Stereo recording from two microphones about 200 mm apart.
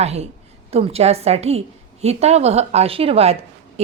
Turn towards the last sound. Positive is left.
turn(degrees=-30)  # may be behind; listen again after turning